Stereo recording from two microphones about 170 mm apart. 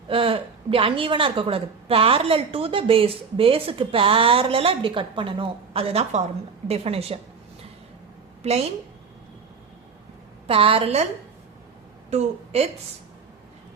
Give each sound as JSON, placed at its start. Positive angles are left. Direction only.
{"t": 0.1, "sound": "a woman's voice", "side_deg": -30}
{"t": 8.4, "sound": "a woman's voice", "side_deg": -40}
{"t": 10.4, "sound": "a woman's voice", "side_deg": -35}
{"t": 12.1, "sound": "a woman's voice", "side_deg": -40}